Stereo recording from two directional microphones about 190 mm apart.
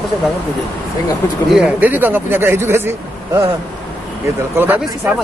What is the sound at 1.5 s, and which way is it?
Speech, 5° right (ahead or behind).